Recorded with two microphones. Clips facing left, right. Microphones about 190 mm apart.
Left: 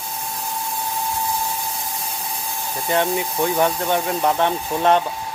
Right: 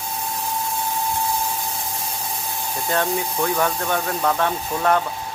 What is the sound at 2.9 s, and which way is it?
Speech, 20° left (ahead or behind).